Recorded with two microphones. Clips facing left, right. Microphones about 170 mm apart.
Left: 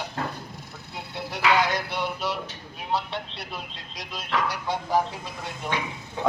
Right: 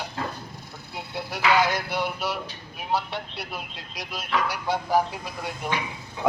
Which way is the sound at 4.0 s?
20° left (ahead or behind).